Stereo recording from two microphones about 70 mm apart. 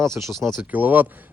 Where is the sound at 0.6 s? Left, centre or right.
Right.